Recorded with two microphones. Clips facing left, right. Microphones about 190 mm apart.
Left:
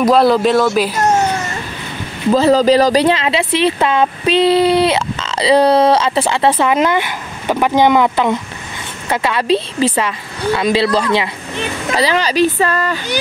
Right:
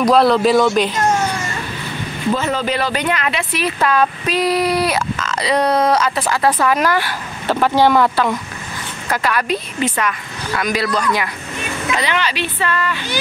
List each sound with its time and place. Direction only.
0.0 s speech: centre (ahead or behind)
2.3 s speech: 35° left (ahead or behind)